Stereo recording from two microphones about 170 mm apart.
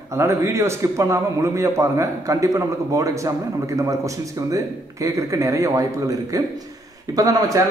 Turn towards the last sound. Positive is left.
turn(degrees=-20)  # may be behind; listen again after turning